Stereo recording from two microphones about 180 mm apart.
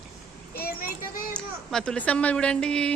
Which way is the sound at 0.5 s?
55° left (ahead or behind).